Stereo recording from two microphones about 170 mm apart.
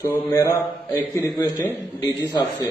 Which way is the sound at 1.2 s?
20° left (ahead or behind).